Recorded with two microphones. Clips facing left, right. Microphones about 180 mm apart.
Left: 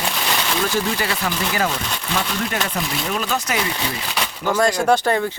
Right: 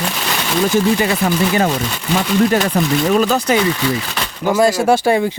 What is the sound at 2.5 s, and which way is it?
Speech, 35° right (ahead or behind).